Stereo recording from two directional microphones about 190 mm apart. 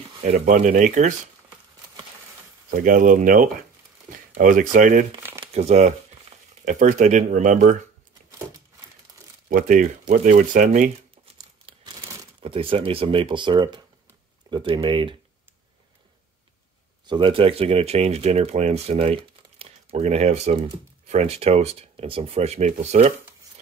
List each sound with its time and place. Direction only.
0.2 s speech: 40° right (ahead or behind)
2.7 s speech: 45° right (ahead or behind)
5.4 s speech: 30° right (ahead or behind)
9.5 s speech: 45° right (ahead or behind)
11.3 s crumpling: 20° right (ahead or behind)
14.5 s speech: 25° right (ahead or behind)
17.0 s speech: 25° right (ahead or behind)